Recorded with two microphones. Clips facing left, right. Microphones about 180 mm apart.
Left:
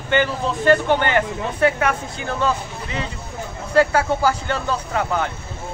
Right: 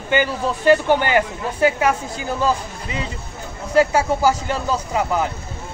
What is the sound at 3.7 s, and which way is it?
Speech, 10° right (ahead or behind).